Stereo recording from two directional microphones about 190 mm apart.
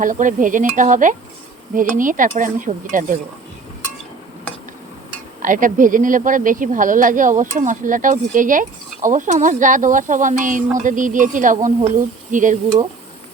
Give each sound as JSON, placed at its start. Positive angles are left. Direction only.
{"t": 0.0, "sound": "speech", "side_deg": -45}
{"t": 5.4, "sound": "speech", "side_deg": -45}